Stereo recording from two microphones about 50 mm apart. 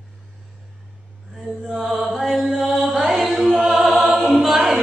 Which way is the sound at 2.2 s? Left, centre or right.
Centre.